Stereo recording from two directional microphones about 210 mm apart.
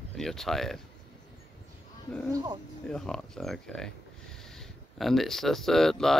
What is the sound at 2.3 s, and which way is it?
Speech, 20° right (ahead or behind).